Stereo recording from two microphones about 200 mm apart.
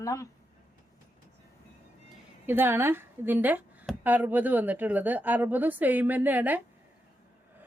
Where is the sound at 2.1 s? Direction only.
10° right (ahead or behind).